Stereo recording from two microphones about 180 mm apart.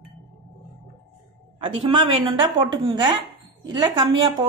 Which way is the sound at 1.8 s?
30° right (ahead or behind).